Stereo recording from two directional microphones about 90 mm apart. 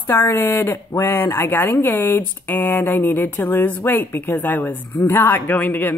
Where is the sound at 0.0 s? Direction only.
25° left (ahead or behind).